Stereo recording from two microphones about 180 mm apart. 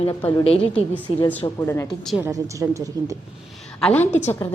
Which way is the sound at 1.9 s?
Centre (ahead or behind).